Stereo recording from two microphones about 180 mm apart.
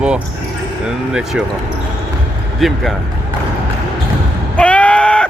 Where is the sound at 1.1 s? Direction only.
5° right (ahead or behind).